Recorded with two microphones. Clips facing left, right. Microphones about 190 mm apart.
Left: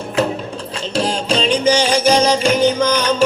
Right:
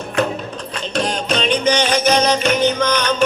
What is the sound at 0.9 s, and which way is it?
Music, 30° left (ahead or behind).